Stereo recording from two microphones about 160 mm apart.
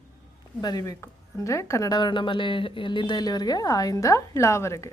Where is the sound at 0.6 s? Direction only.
25° left (ahead or behind).